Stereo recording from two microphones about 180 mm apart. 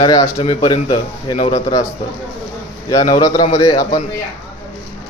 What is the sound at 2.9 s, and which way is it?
Speech, 20° left (ahead or behind).